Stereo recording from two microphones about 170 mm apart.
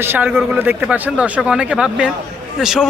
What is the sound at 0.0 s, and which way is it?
Speech, 10° right (ahead or behind).